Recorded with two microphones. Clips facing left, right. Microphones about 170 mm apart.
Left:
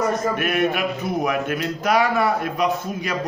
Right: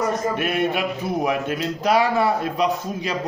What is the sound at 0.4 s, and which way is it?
Speech, 30° right (ahead or behind).